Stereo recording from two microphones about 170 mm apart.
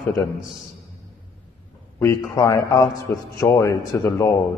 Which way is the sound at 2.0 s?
20° left (ahead or behind).